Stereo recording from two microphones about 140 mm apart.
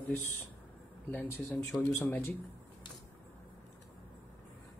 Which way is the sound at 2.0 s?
20° left (ahead or behind).